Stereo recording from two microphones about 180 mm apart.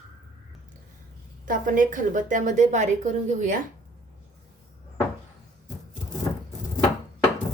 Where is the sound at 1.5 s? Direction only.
50° right (ahead or behind).